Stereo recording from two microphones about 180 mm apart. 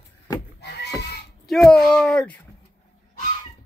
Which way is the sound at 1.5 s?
Centre (ahead or behind).